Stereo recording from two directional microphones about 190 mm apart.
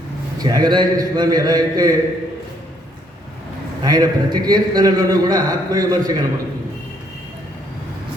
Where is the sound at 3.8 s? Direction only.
20° right (ahead or behind).